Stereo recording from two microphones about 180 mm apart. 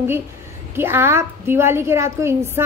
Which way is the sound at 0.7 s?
15° right (ahead or behind).